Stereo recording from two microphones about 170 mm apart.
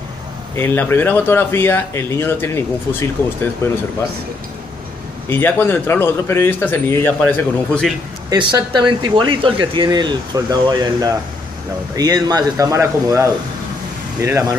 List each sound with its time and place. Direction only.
0.6 s speech: 15° left (ahead or behind)
5.3 s speech: 10° left (ahead or behind)
8.5 s speech: 25° right (ahead or behind)